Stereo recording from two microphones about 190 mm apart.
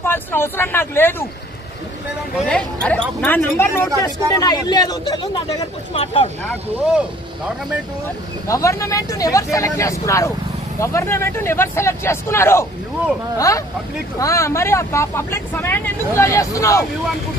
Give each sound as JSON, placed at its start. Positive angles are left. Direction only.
{"t": 0.0, "sound": "speech", "side_deg": 10}
{"t": 2.3, "sound": "speech", "side_deg": 5}
{"t": 8.5, "sound": "speech", "side_deg": 15}